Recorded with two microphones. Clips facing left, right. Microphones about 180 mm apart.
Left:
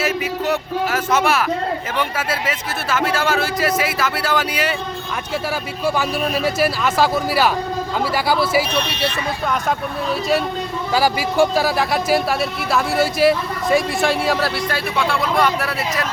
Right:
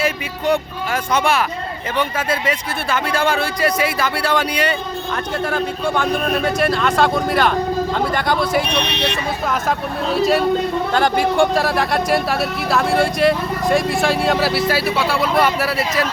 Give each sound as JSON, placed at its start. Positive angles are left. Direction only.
{"t": 0.0, "sound": "speech", "side_deg": 5}
{"t": 8.7, "sound": "speech", "side_deg": -65}
{"t": 10.1, "sound": "speech", "side_deg": 0}